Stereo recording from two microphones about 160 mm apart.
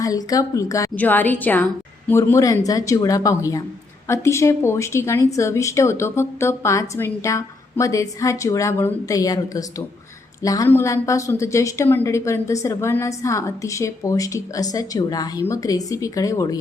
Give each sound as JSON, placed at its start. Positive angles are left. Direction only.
{"t": 0.0, "sound": "a woman's voice", "side_deg": 20}